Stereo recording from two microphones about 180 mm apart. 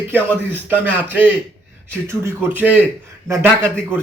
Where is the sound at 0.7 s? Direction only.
10° right (ahead or behind).